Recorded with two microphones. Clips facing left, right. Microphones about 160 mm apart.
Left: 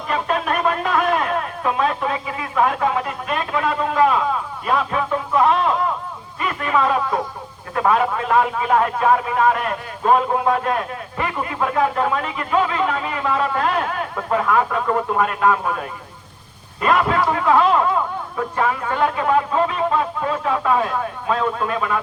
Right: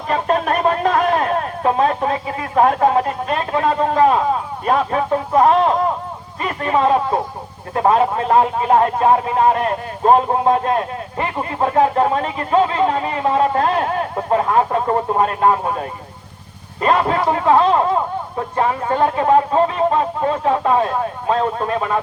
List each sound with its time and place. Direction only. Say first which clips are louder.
0.1 s speech: right 4 dB; 40° right (ahead or behind)